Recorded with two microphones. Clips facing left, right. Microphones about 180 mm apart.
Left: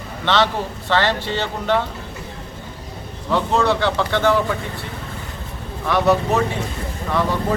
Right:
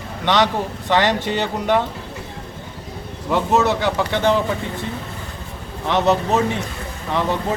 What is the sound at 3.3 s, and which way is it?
Speech, 20° right (ahead or behind).